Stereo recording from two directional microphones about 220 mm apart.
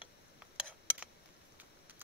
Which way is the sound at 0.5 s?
5° right (ahead or behind).